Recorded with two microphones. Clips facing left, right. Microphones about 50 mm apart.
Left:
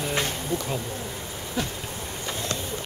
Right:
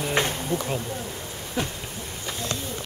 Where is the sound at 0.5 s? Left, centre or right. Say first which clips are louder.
Right 1 dB; right.